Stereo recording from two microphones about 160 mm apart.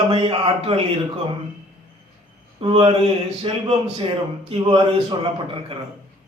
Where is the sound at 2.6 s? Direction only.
35° right (ahead or behind).